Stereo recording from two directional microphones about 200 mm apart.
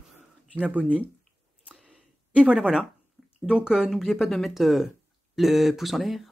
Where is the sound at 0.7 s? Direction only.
5° right (ahead or behind).